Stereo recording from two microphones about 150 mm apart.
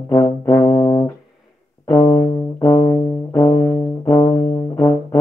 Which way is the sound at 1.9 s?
25° left (ahead or behind).